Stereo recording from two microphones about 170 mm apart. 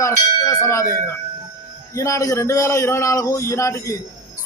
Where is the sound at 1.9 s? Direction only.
20° left (ahead or behind).